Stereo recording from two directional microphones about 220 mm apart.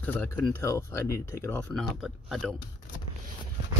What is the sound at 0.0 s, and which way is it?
Speech, 10° left (ahead or behind).